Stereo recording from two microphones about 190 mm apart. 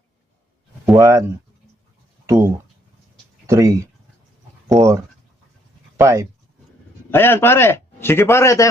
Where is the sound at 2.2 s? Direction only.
15° right (ahead or behind).